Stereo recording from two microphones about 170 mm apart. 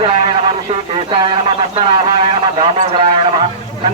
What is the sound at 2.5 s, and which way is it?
Speech, 35° right (ahead or behind).